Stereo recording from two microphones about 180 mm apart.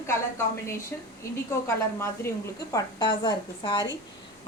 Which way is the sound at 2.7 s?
25° left (ahead or behind).